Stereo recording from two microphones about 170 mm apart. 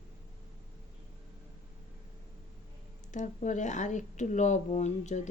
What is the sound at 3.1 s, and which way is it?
A woman's voice, 45° left (ahead or behind).